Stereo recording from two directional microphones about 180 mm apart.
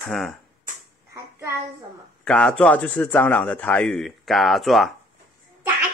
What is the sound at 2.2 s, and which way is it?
Speech, 5° left (ahead or behind).